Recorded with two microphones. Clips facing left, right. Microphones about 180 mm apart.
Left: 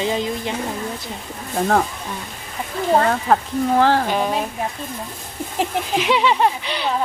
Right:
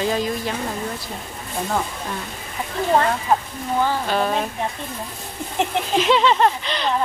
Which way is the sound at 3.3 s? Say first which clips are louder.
Left 4 dB; 90° left.